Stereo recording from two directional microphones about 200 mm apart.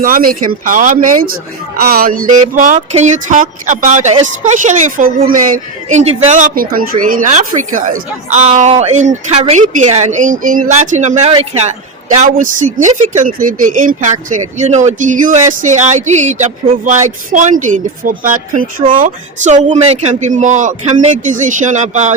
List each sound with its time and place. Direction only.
0.0 s speech: 45° right (ahead or behind); by 11.7 s 30° right (ahead or behind)
12.1 s speech: 40° right (ahead or behind)